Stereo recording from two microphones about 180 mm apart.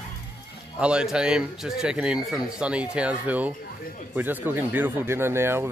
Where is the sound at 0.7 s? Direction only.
5° right (ahead or behind).